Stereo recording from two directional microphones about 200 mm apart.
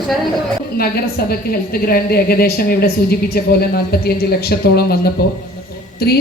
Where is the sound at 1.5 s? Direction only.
50° left (ahead or behind).